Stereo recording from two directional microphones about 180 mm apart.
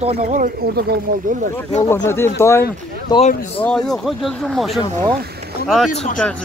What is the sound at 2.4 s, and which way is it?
Speech, 15° left (ahead or behind).